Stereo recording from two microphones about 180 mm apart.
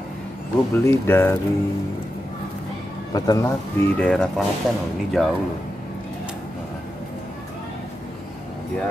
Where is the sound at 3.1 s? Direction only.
20° left (ahead or behind).